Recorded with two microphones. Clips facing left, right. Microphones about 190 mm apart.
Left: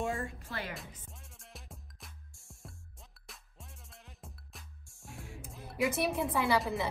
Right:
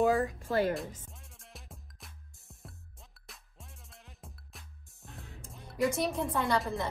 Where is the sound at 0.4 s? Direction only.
45° right (ahead or behind).